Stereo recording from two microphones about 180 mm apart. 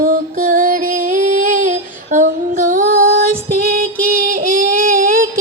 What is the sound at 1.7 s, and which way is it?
Female singing, 45° right (ahead or behind).